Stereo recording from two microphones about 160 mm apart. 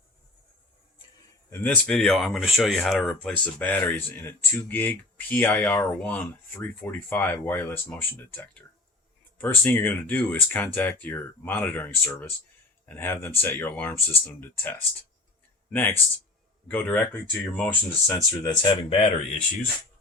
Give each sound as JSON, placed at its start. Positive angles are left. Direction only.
{"t": 1.6, "sound": "speech", "side_deg": 5}
{"t": 18.1, "sound": "speech", "side_deg": 25}